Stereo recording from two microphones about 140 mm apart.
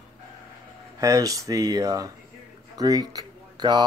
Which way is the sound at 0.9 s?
25° right (ahead or behind).